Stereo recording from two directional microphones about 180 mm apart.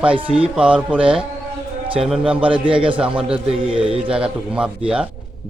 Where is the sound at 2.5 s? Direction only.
30° right (ahead or behind).